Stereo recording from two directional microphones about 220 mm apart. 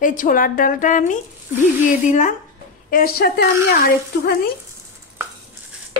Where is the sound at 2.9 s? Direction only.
40° left (ahead or behind).